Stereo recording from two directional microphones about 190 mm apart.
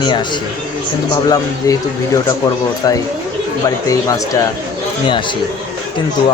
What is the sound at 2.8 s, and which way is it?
Speech, 20° left (ahead or behind).